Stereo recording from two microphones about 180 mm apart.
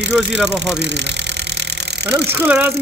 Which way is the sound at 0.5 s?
75° right (ahead or behind).